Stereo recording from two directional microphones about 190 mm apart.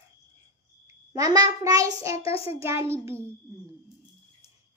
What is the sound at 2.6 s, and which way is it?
Child singing, 15° right (ahead or behind).